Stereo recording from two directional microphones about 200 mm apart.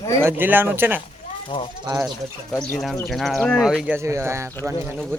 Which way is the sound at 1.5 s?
25° left (ahead or behind).